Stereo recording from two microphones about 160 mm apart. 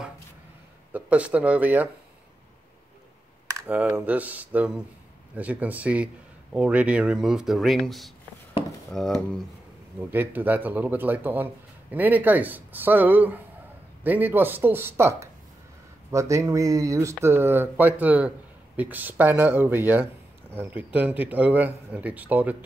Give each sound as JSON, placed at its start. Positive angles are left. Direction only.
{"t": 0.9, "sound": "speech", "side_deg": -10}
{"t": 3.6, "sound": "speech", "side_deg": -10}
{"t": 9.9, "sound": "speech", "side_deg": -10}